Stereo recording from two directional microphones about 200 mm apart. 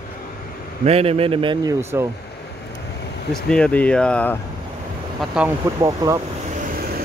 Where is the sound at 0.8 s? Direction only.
30° right (ahead or behind); by 2.0 s 15° right (ahead or behind).